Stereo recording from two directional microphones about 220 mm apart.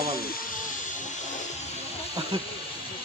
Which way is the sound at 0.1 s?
40° left (ahead or behind).